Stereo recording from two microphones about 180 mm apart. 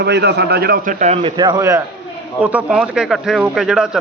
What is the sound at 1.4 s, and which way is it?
Speech, 20° right (ahead or behind).